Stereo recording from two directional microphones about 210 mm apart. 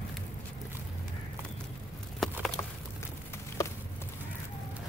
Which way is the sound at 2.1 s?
Centre (ahead or behind).